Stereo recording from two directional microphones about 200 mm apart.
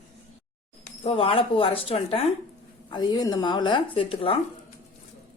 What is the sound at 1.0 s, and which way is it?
Speech, 25° left (ahead or behind).